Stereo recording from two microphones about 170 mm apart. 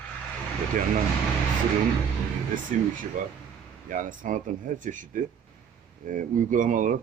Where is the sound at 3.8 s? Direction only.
50° right (ahead or behind).